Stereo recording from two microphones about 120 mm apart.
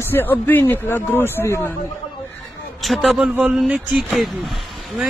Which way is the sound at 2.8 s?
Centre (ahead or behind).